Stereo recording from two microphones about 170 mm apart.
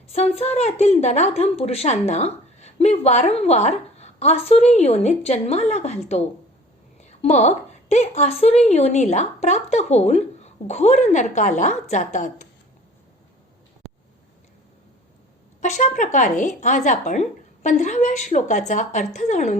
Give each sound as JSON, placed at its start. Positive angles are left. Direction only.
{"t": 0.1, "sound": "a woman's voice", "side_deg": 40}
{"t": 15.6, "sound": "speech", "side_deg": 45}